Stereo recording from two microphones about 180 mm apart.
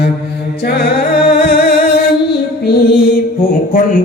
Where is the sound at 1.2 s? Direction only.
65° left (ahead or behind).